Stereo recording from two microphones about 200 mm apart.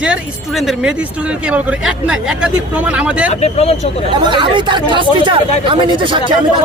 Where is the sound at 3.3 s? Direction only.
30° left (ahead or behind).